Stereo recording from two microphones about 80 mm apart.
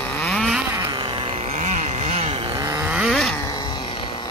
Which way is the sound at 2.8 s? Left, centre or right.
Centre.